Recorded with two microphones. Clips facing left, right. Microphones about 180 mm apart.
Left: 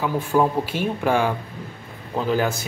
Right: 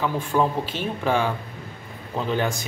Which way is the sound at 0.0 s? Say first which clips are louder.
Left 2 dB; 10° left (ahead or behind).